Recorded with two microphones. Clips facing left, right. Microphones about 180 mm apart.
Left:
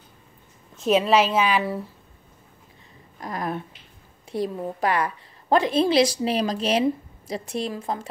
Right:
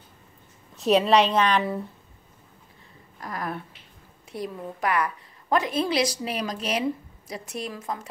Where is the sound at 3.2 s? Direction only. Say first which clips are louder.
Left 3 dB; 20° left (ahead or behind).